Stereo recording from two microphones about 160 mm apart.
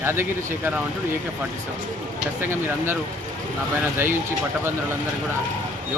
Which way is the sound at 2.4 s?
15° right (ahead or behind).